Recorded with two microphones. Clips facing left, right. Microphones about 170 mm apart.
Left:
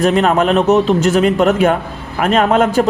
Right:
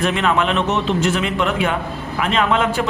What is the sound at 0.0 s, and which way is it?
A man's voice, 40° left (ahead or behind).